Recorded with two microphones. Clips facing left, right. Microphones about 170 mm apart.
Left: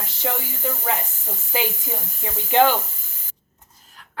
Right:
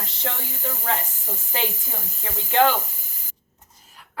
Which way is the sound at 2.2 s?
15° left (ahead or behind).